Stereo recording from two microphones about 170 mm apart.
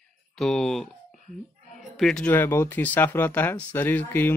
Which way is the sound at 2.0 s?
5° left (ahead or behind).